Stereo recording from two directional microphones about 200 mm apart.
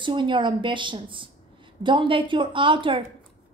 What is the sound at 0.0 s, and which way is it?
A woman's voice, 25° right (ahead or behind).